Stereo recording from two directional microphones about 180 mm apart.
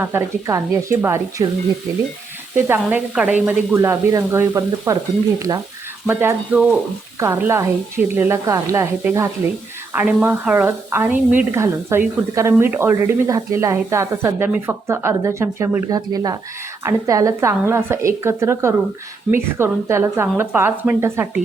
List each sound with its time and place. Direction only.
0.0 s a woman's voice: 15° right (ahead or behind)
2.6 s a woman's voice: 10° right (ahead or behind)
6.1 s a woman's voice: 10° right (ahead or behind)